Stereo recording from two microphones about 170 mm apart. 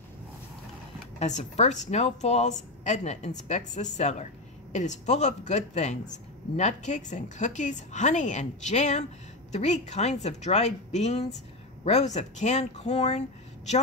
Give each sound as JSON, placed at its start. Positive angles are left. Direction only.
{"t": 1.2, "sound": "a man's voice", "side_deg": 40}